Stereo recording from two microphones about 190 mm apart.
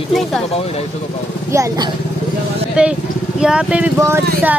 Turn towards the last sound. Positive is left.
turn(degrees=-10)  # may be behind; listen again after turning